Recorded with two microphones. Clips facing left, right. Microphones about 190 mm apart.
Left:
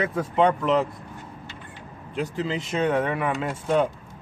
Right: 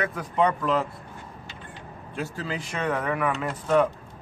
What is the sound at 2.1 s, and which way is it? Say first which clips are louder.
Speech: left 4 dB; 20° left (ahead or behind).